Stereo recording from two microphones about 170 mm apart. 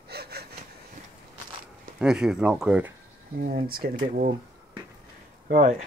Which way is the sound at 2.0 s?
5° right (ahead or behind).